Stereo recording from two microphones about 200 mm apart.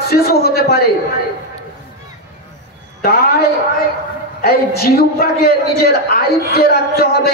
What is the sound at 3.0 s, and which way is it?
A man's voice, 50° left (ahead or behind).